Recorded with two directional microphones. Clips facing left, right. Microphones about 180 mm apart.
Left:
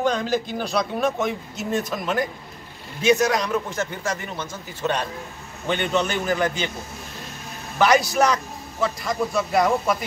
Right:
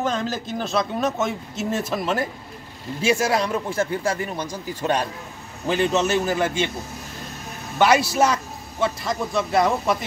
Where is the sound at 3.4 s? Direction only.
30° right (ahead or behind).